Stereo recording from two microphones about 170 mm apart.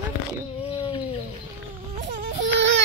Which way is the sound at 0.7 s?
35° left (ahead or behind).